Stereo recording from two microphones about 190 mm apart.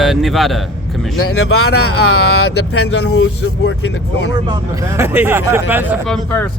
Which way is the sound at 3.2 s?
70° left (ahead or behind).